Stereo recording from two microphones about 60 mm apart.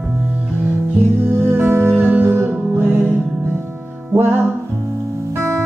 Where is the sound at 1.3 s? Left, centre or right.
Right.